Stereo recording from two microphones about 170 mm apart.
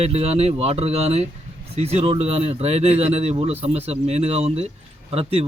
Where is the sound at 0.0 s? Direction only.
35° right (ahead or behind).